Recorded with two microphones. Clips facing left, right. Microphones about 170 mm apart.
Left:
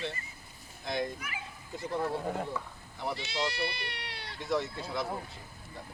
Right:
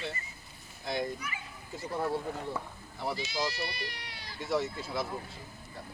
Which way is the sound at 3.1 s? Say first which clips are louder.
Even; 65° left (ahead or behind).